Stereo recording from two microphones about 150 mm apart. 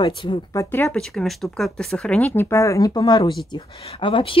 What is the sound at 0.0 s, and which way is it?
Speech, 30° left (ahead or behind).